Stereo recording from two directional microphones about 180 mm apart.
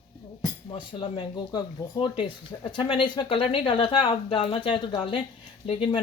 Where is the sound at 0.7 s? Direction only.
25° left (ahead or behind).